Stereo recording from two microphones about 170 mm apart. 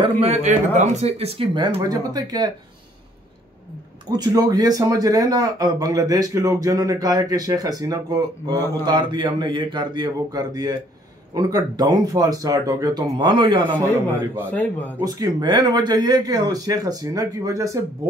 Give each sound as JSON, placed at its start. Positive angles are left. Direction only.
{"t": 0.0, "sound": "speech", "side_deg": -40}
{"t": 4.1, "sound": "speech", "side_deg": -25}
{"t": 14.5, "sound": "speech", "side_deg": 10}
{"t": 15.0, "sound": "speech", "side_deg": -20}